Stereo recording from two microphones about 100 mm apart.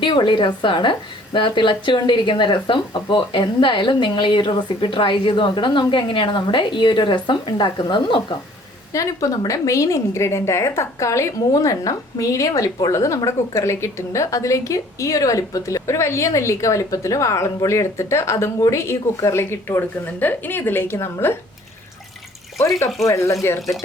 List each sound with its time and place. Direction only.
0.0 s speech: 50° left (ahead or behind)
8.9 s a woman's voice: 35° left (ahead or behind)
23.0 s speech: 30° left (ahead or behind)